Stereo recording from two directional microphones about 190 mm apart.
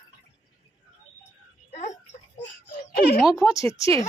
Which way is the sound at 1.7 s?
35° left (ahead or behind).